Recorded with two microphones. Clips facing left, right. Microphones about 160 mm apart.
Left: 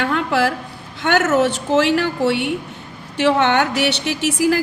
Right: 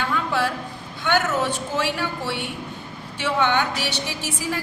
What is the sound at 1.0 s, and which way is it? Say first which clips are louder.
A woman's voice: left 6 dB; 80° left.